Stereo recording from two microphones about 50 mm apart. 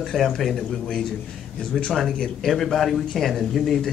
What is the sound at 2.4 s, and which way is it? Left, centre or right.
A man's voice, centre.